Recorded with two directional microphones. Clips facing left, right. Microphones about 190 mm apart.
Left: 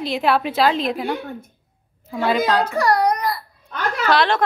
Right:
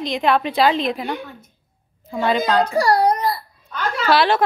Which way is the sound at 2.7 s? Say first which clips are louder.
Right 2 dB; 30° right (ahead or behind).